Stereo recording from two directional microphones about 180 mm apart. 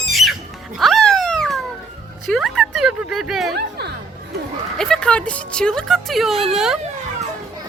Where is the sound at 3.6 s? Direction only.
65° right (ahead or behind).